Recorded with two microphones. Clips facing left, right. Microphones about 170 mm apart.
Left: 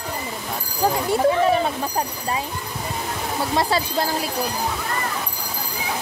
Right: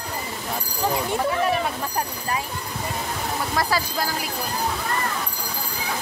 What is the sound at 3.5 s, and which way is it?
Speech, 25° left (ahead or behind).